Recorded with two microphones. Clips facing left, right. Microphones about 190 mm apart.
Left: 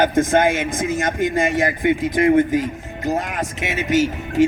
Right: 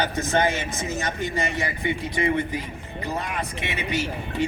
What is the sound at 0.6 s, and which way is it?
Speech, 90° left.